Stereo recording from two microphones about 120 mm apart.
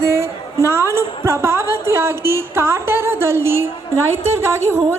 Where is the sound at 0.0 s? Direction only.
20° right (ahead or behind).